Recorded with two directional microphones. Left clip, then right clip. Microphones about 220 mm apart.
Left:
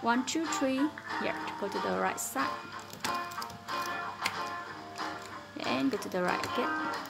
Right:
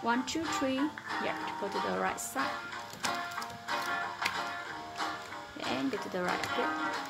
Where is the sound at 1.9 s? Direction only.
10° left (ahead or behind).